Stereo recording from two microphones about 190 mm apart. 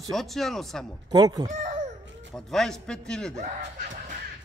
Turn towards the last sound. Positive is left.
turn(degrees=5)  # may be behind; listen again after turning